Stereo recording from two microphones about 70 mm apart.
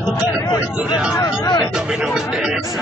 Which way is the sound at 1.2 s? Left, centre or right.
Left.